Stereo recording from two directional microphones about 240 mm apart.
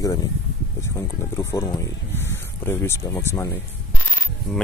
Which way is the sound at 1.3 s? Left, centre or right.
Centre.